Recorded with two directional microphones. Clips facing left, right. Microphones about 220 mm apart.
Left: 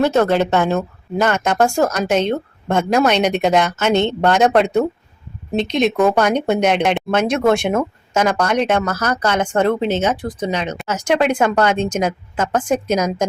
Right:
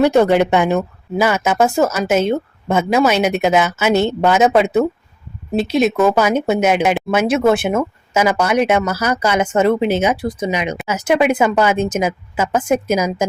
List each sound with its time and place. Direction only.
0.0 s speech: 15° right (ahead or behind)